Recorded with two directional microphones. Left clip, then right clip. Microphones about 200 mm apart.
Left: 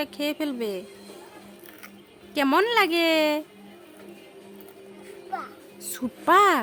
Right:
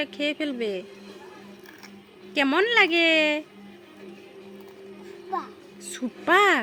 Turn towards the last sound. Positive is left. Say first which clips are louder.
# left 1 dB
turn(degrees=15)  # may be behind; listen again after turning